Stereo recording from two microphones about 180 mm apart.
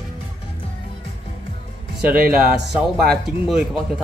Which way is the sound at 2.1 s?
60° right (ahead or behind).